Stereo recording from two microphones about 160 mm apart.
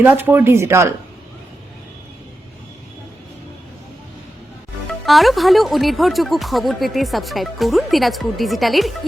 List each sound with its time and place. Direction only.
0.0 s speech: 15° right (ahead or behind)
4.9 s speech: centre (ahead or behind)